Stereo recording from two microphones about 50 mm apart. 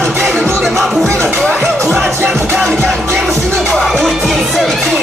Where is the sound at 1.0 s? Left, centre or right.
Right.